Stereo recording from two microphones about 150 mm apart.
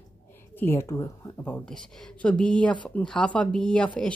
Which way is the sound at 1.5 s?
5° left (ahead or behind).